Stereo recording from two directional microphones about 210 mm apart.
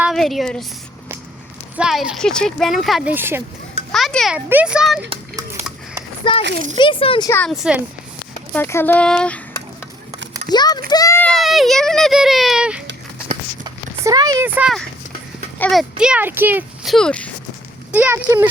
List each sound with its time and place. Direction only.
0.0 s a woman's voice: centre (ahead or behind)
1.7 s speech: 5° right (ahead or behind)
3.9 s a child's voice: centre (ahead or behind)
5.0 s a sound: 15° right (ahead or behind)
6.2 s speech: 20° left (ahead or behind)
7.3 s speech: 10° left (ahead or behind)
7.5 s speech: 5° right (ahead or behind)
8.5 s speech: 10° left (ahead or behind)
10.5 s a child's voice: 20° left (ahead or behind); by 12.8 s 5° right (ahead or behind)
14.0 s speech: 20° right (ahead or behind)
14.4 s speech: 5° right (ahead or behind)
17.9 s speech: 10° right (ahead or behind)